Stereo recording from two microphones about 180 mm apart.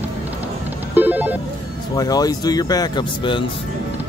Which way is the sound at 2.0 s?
20° left (ahead or behind).